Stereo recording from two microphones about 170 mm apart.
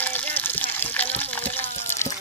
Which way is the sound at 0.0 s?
10° left (ahead or behind).